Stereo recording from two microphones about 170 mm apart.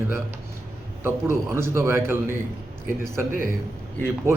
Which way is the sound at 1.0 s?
15° right (ahead or behind).